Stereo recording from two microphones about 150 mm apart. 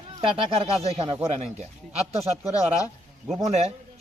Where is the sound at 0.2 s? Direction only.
35° right (ahead or behind).